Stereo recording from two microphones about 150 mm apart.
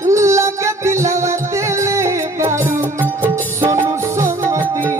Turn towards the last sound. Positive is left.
turn(degrees=-15)  # may be behind; listen again after turning